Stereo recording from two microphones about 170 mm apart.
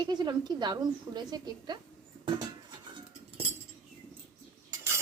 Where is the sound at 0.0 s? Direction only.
25° right (ahead or behind).